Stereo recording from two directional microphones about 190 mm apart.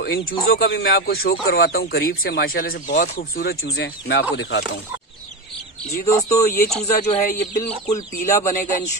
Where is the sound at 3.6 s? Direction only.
80° left.